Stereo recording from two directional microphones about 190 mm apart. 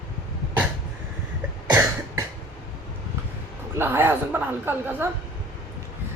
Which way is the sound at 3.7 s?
10° right (ahead or behind).